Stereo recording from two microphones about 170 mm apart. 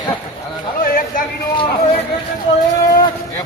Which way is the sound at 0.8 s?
55° left (ahead or behind).